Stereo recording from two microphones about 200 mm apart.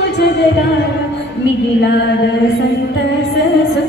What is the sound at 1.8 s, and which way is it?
Mantra, 60° left (ahead or behind).